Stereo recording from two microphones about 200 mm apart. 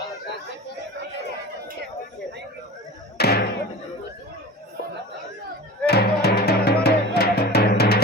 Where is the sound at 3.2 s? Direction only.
55° left (ahead or behind).